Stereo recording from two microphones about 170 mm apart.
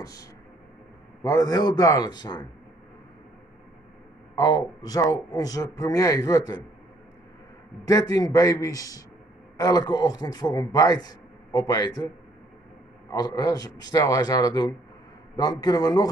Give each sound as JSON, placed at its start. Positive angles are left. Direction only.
{"t": 0.0, "sound": "a man's voice", "side_deg": 20}
{"t": 4.4, "sound": "a man's voice", "side_deg": 20}
{"t": 7.8, "sound": "a man's voice", "side_deg": 20}
{"t": 13.1, "sound": "a man's voice", "side_deg": 20}